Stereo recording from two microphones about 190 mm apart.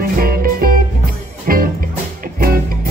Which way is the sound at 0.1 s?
50° right (ahead or behind).